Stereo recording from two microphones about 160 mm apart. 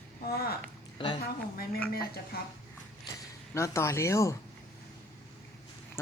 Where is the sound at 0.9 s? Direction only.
30° left (ahead or behind).